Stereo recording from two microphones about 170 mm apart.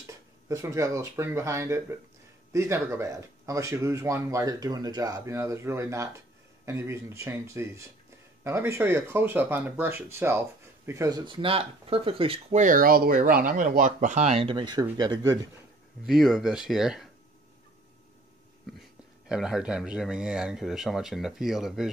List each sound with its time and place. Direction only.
0.0 s speech: 20° right (ahead or behind)
16.1 s speech: centre (ahead or behind)
18.8 s speech: 5° right (ahead or behind)